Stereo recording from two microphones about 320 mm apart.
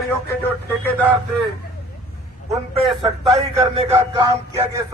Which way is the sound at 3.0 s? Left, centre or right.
Centre.